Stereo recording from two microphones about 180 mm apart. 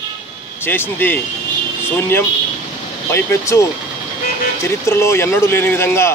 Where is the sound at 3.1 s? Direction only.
15° left (ahead or behind).